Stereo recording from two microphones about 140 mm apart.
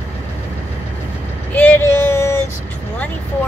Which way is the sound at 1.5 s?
15° left (ahead or behind).